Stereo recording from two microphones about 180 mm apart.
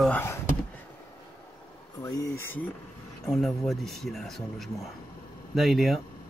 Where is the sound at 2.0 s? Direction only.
20° left (ahead or behind); by 6.0 s centre (ahead or behind).